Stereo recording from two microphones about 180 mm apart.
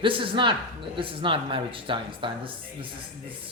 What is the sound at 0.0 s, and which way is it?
Speech, 30° right (ahead or behind).